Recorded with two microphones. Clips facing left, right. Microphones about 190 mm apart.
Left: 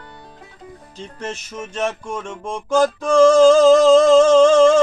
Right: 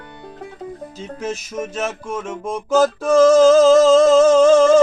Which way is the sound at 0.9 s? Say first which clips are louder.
Right 2 dB; 5° right (ahead or behind).